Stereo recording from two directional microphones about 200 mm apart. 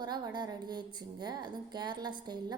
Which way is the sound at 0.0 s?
20° right (ahead or behind).